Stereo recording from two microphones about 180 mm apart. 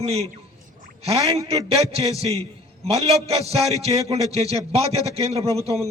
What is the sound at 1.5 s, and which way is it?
A man's voice, 35° right (ahead or behind).